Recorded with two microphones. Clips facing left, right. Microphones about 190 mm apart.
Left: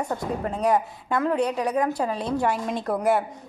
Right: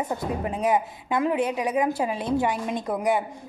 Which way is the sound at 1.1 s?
15° right (ahead or behind).